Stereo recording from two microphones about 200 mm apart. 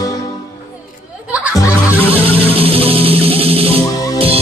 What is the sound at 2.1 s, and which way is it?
Music, 30° right (ahead or behind).